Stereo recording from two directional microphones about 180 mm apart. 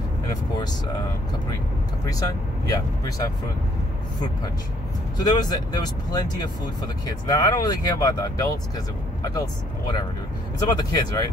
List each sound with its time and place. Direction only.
2.0 s speech: 20° left (ahead or behind)
5.2 s speech: 20° left (ahead or behind)
10.7 s speech: 25° left (ahead or behind)